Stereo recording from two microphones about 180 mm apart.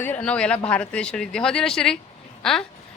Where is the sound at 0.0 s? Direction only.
10° left (ahead or behind).